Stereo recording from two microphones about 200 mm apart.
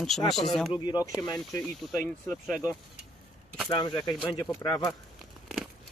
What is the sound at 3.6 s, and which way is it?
Speech, 25° left (ahead or behind).